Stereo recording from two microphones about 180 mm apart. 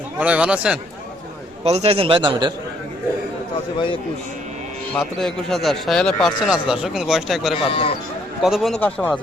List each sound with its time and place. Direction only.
0.2 s a man's voice: 5° right (ahead or behind)
1.6 s a man's voice: 35° right (ahead or behind)
4.9 s speech: centre (ahead or behind)
7.7 s speech: 30° left (ahead or behind)
8.4 s speech: centre (ahead or behind)